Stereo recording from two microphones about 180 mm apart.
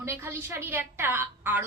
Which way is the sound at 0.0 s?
15° right (ahead or behind).